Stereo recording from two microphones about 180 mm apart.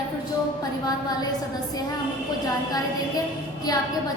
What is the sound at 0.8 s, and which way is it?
Speech, 20° left (ahead or behind).